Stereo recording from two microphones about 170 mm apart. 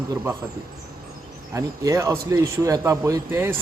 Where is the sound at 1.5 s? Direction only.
20° right (ahead or behind).